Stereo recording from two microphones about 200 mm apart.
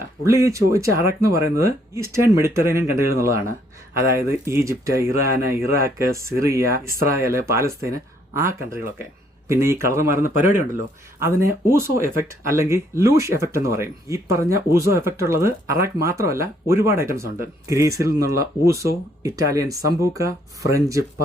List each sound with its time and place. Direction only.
0.3 s speech: 15° right (ahead or behind)